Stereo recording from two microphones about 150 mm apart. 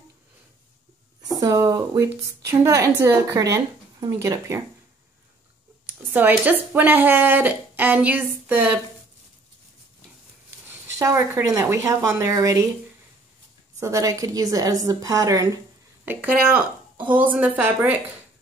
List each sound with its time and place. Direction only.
1.4 s a woman's voice: 25° right (ahead or behind)
6.1 s a woman's voice: 10° right (ahead or behind)
10.7 s a woman's voice: 20° right (ahead or behind)
13.7 s a woman's voice: 20° right (ahead or behind)
16.1 s a woman's voice: 10° right (ahead or behind)